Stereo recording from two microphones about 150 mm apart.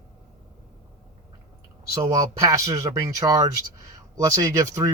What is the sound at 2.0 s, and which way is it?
Speech, 25° right (ahead or behind).